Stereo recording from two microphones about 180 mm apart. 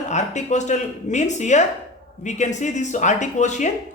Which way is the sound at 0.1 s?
40° left (ahead or behind).